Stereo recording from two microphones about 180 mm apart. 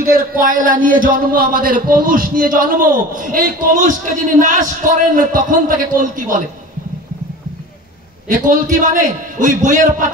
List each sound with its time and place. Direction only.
0.0 s speech: 55° right (ahead or behind)
8.3 s speech: 45° right (ahead or behind)